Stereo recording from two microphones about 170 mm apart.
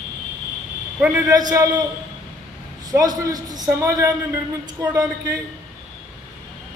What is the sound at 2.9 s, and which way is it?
A man's voice, 20° right (ahead or behind).